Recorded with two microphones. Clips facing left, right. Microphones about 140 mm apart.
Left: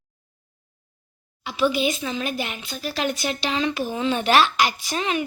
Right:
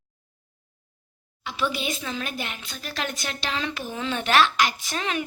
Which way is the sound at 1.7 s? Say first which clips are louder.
Left 6 dB; 5° left (ahead or behind).